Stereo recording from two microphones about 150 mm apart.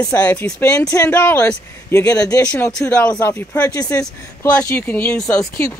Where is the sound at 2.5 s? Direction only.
5° left (ahead or behind).